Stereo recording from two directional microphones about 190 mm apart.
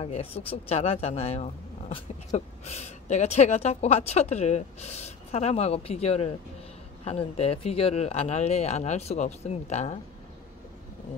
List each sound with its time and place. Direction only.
0.0 s speech: 30° left (ahead or behind)